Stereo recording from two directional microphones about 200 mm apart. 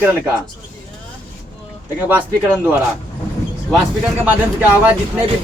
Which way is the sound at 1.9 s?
10° right (ahead or behind).